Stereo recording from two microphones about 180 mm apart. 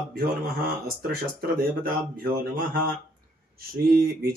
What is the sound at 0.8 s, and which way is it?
Speech, 55° right (ahead or behind).